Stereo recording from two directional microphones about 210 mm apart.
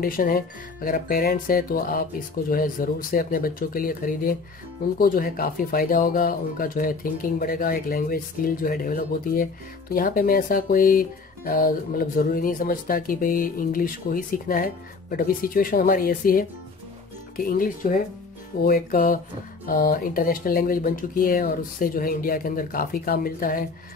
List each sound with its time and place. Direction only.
0.0 s speech: 45° left (ahead or behind)